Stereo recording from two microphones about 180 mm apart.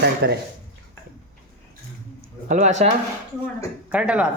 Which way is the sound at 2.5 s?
40° right (ahead or behind).